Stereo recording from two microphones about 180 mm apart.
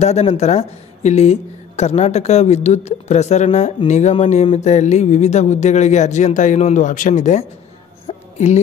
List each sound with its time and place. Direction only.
0.0 s speech: 35° left (ahead or behind)
8.1 s music: 35° left (ahead or behind)